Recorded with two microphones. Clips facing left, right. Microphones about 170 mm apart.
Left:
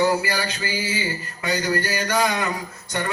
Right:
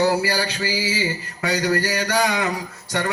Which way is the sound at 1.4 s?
75° right (ahead or behind).